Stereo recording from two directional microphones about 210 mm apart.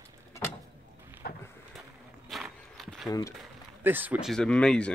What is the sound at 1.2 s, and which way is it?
Vehicle, 50° left (ahead or behind).